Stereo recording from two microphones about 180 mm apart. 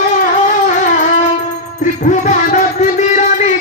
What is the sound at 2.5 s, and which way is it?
Music, 40° left (ahead or behind).